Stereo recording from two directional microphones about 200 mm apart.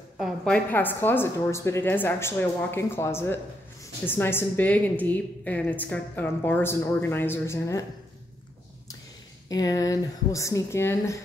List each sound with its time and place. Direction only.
0.2 s a woman's voice: 5° left (ahead or behind)
9.5 s a woman's voice: 20° left (ahead or behind)